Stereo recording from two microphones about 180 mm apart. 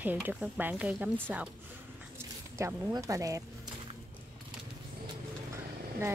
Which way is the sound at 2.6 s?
15° right (ahead or behind).